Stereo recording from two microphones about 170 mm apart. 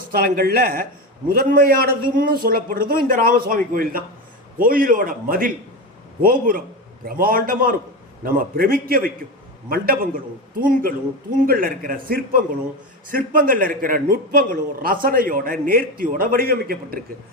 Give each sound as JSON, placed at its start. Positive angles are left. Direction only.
{"t": 0.1, "sound": "a man's voice", "side_deg": -60}
{"t": 11.4, "sound": "a man's voice", "side_deg": -55}